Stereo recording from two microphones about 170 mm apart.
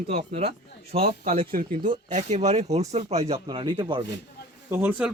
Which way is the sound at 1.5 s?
55° right (ahead or behind).